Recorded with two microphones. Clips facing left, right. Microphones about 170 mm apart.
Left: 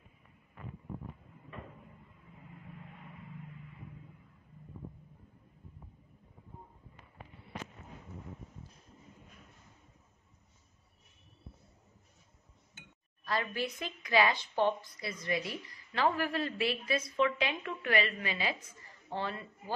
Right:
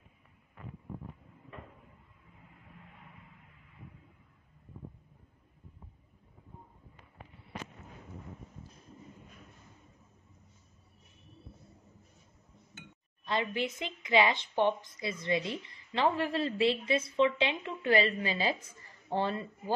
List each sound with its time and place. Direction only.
13.2 s a woman's voice: 20° right (ahead or behind)